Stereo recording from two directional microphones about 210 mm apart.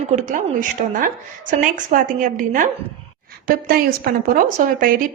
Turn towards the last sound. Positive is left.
turn(degrees=-40)  # may be behind; listen again after turning